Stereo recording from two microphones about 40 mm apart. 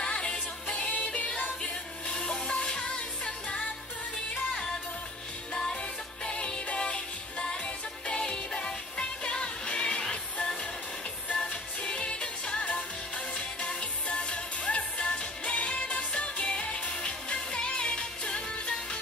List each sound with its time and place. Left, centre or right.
0.0 s music: left
1.6 s music: left
5.5 s music: centre
11.8 s music: left